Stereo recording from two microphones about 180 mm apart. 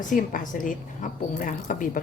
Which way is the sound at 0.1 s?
45° left (ahead or behind).